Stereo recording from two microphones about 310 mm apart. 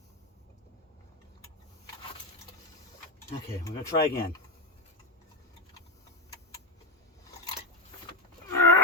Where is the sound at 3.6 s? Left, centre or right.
Centre.